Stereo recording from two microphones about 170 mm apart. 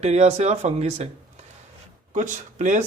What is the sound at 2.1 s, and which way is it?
Speech, 45° right (ahead or behind).